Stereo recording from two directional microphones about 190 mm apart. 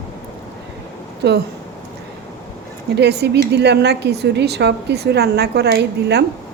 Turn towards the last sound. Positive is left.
turn(degrees=-60)  # may be behind; listen again after turning